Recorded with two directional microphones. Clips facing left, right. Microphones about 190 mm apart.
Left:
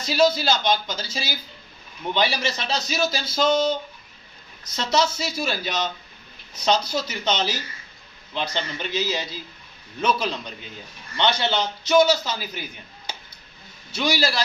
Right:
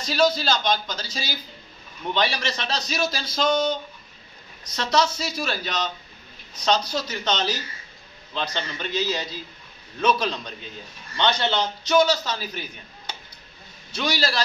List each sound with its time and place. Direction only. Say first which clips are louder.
0.0 s a man's voice: left 2 dB; 5° left (ahead or behind)
13.9 s a man's voice: left 2 dB; 10° left (ahead or behind)